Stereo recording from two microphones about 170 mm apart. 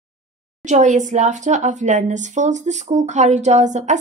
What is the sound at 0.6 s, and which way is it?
Speech, 45° right (ahead or behind).